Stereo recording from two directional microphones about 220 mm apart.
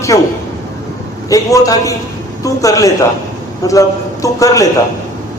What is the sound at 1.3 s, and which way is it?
A man's voice, 15° left (ahead or behind).